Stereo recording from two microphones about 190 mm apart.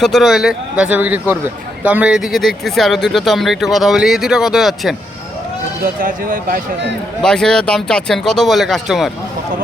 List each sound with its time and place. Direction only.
0.0 s speech: centre (ahead or behind)
5.8 s speech: 45° right (ahead or behind)
7.2 s speech: 5° left (ahead or behind)